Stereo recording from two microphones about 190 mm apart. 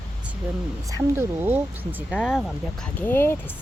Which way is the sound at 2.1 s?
Centre (ahead or behind).